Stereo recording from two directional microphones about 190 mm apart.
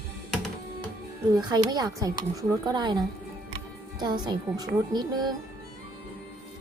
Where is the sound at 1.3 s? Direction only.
20° right (ahead or behind).